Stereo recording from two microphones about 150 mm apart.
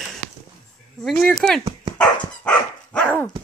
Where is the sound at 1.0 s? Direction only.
5° left (ahead or behind).